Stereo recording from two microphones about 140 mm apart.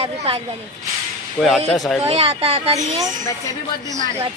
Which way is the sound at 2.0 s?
45° right (ahead or behind).